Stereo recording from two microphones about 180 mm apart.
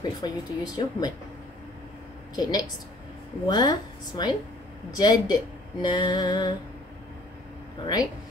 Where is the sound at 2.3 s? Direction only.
20° left (ahead or behind).